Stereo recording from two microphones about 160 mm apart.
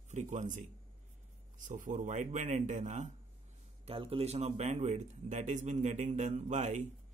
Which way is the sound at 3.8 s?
35° right (ahead or behind).